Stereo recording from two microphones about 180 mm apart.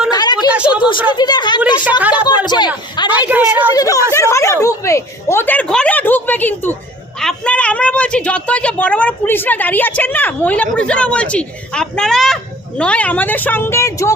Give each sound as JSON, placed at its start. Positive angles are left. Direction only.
{"t": 0.1, "sound": "a sound", "side_deg": 25}
{"t": 0.3, "sound": "a sound", "side_deg": -5}
{"t": 1.1, "sound": "a woman's voice", "side_deg": 25}
{"t": 1.7, "sound": "a woman's voice", "side_deg": -10}
{"t": 2.5, "sound": "a woman's voice", "side_deg": 25}
{"t": 3.1, "sound": "a woman's voice", "side_deg": -10}
{"t": 3.8, "sound": "a man's voice", "side_deg": 20}